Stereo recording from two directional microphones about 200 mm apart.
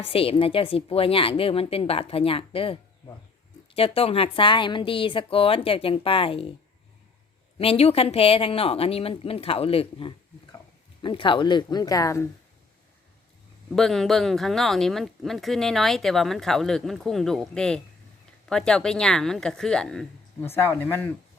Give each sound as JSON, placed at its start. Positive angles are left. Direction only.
{"t": 0.0, "sound": "a woman's voice", "side_deg": 30}
{"t": 3.8, "sound": "a woman's voice", "side_deg": 30}
{"t": 7.6, "sound": "a woman's voice", "side_deg": 30}
{"t": 13.7, "sound": "speech", "side_deg": 0}